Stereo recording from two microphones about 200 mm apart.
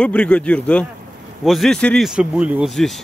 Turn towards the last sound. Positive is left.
turn(degrees=0)  # may be behind; listen again after turning